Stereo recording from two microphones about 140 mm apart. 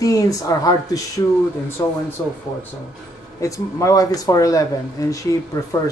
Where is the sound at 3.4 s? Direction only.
20° left (ahead or behind).